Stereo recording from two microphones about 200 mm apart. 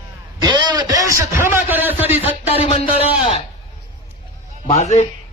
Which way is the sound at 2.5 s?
30° left (ahead or behind).